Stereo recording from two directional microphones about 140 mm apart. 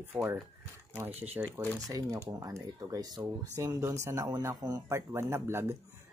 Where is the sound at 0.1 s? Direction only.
15° right (ahead or behind).